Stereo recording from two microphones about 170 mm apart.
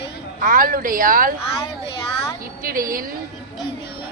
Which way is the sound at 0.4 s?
55° right (ahead or behind).